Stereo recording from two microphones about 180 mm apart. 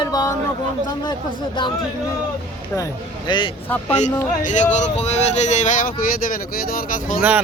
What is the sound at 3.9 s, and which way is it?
Speech, 40° left (ahead or behind).